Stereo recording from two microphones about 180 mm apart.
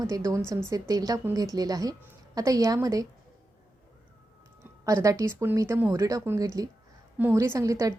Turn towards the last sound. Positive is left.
turn(degrees=-15)  # may be behind; listen again after turning